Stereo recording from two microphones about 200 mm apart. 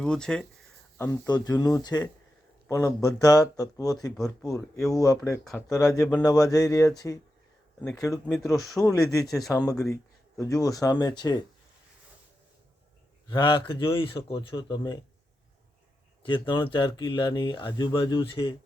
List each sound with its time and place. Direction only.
0.0 s speech: 5° left (ahead or behind)
8.3 s speech: centre (ahead or behind)
8.8 s speech: 15° left (ahead or behind)
13.2 s speech: 20° left (ahead or behind)
16.2 s speech: 25° left (ahead or behind)